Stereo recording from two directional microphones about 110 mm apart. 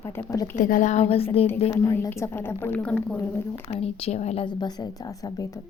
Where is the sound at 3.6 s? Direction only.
60° left (ahead or behind).